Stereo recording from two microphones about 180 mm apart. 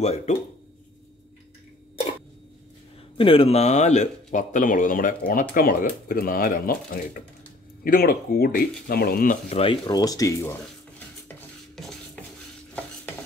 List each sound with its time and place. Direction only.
0.0 s speech: 35° left (ahead or behind)
3.2 s a man's voice: 30° left (ahead or behind); by 9.4 s 55° left (ahead or behind)
9.5 s speech: 30° left (ahead or behind); by 10.6 s 15° left (ahead or behind)
11.2 s dishes: centre (ahead or behind)